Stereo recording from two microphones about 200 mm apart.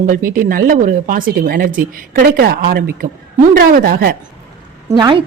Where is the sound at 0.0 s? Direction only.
45° right (ahead or behind).